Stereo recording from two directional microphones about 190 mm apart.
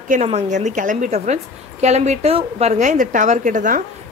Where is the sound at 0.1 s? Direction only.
35° right (ahead or behind).